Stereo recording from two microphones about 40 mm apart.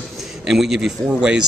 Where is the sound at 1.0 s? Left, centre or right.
Right.